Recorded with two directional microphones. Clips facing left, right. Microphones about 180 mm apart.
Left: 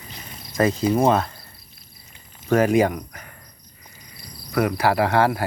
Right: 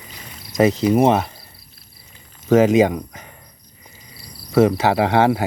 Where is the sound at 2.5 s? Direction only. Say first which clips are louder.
Right 4 dB; 20° right (ahead or behind).